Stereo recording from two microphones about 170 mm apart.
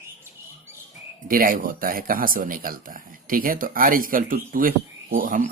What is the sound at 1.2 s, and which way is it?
Speech, 55° right (ahead or behind).